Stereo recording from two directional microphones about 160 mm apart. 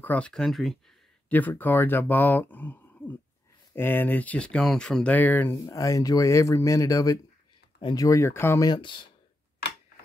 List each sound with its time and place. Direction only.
0.0 s speech: 10° left (ahead or behind); by 9.1 s 30° left (ahead or behind)